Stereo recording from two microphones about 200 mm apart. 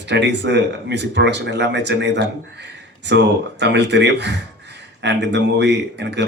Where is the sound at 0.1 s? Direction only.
60° right (ahead or behind).